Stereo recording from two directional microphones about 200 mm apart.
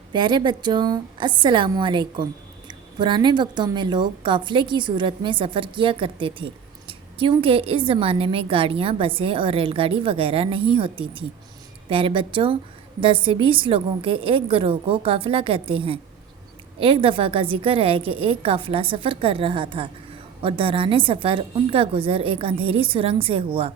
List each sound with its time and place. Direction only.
0.1 s a woman's voice: 25° right (ahead or behind)